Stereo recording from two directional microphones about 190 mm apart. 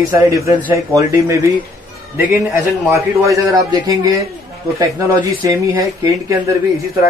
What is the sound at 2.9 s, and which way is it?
A man's voice, 15° right (ahead or behind).